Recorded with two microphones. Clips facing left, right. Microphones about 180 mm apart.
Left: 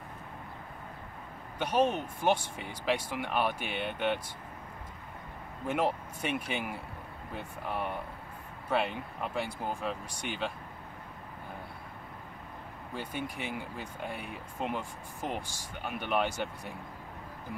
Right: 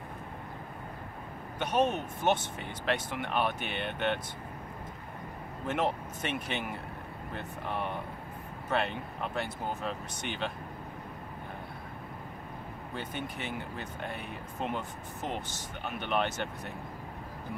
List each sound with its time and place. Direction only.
1.6 s speech: 10° left (ahead or behind)
5.7 s speech: 10° left (ahead or behind)
12.9 s speech: 10° left (ahead or behind)